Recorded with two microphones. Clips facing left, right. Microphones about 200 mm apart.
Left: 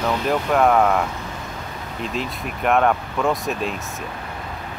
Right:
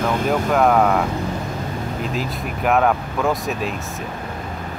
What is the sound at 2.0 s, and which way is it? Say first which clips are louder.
Speech: left 2 dB; centre (ahead or behind).